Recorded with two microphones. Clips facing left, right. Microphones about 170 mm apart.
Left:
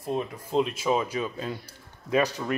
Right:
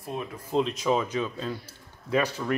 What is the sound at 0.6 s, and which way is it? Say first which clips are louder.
A man's voice: even; 10° left (ahead or behind).